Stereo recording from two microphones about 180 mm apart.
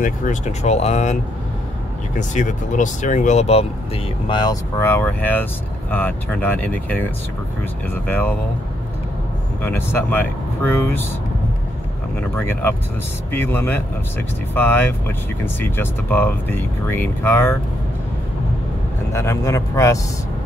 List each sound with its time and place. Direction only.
0.0 s speech: 45° left (ahead or behind)
2.1 s speech: 45° left (ahead or behind)
4.3 s speech: 20° left (ahead or behind)
9.6 s speech: 10° left (ahead or behind)
12.2 s speech: 10° left (ahead or behind)
19.1 s speech: 15° left (ahead or behind)